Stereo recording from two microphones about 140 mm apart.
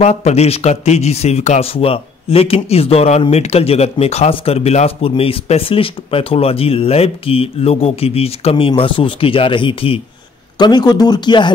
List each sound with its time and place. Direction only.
0.0 s a man's voice: 50° left (ahead or behind)
10.6 s speech: 30° left (ahead or behind)